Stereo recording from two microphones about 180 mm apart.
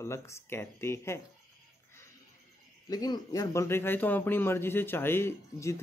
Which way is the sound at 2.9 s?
20° left (ahead or behind).